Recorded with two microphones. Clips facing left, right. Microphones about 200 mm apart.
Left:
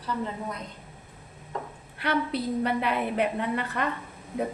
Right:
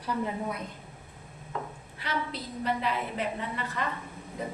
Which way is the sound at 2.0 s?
60° left (ahead or behind).